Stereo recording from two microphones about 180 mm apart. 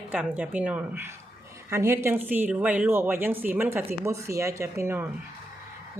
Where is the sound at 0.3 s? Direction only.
5° right (ahead or behind).